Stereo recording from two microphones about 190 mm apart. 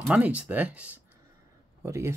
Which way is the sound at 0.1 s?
5° right (ahead or behind).